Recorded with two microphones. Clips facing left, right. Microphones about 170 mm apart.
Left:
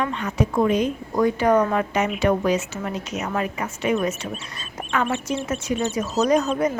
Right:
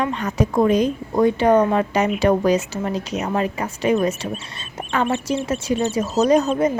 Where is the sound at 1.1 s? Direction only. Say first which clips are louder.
Right 3 dB; 25° right (ahead or behind).